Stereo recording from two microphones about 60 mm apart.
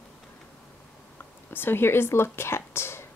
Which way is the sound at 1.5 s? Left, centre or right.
Left.